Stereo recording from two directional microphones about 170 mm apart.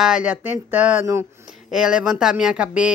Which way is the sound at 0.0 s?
5° right (ahead or behind).